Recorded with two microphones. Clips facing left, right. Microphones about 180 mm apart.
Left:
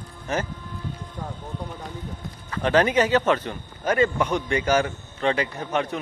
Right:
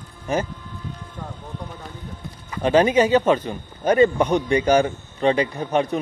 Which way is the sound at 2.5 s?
15° right (ahead or behind).